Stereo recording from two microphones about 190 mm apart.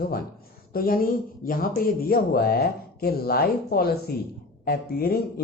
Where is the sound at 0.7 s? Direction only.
50° left (ahead or behind).